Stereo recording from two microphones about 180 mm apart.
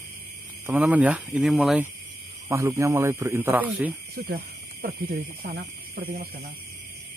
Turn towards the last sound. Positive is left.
turn(degrees=-55)  # may be behind; listen again after turning